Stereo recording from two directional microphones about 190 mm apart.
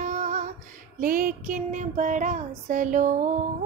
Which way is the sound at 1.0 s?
50° right (ahead or behind).